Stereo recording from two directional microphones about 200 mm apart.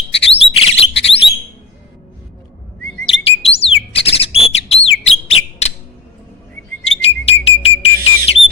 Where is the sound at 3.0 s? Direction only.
30° left (ahead or behind).